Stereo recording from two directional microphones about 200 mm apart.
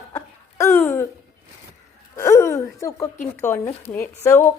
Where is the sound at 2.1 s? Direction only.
15° left (ahead or behind).